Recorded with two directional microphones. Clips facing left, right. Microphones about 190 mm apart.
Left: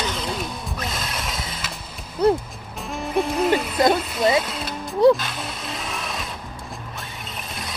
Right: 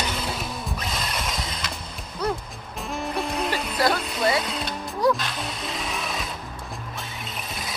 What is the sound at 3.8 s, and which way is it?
Speech, 20° left (ahead or behind).